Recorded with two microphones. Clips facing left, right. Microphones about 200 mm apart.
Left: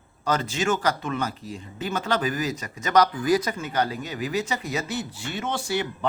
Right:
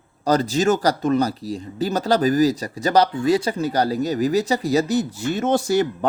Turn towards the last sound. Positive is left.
turn(degrees=-40)  # may be behind; listen again after turning